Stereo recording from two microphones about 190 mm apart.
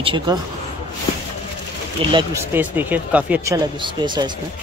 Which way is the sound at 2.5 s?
10° right (ahead or behind).